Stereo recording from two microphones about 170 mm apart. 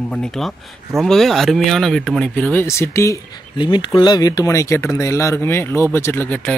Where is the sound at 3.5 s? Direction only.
30° left (ahead or behind); by 6.5 s 10° left (ahead or behind).